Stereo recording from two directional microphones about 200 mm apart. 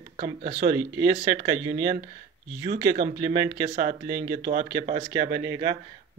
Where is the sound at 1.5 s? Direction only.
20° right (ahead or behind).